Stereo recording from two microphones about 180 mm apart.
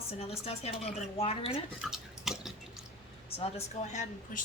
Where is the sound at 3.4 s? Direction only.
35° left (ahead or behind).